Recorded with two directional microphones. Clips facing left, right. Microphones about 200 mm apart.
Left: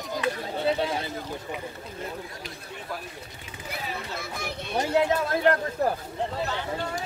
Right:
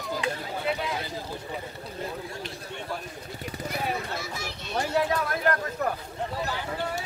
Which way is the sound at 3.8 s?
55° right (ahead or behind).